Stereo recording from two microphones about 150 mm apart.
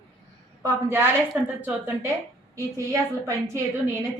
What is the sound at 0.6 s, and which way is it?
Speech, 20° right (ahead or behind).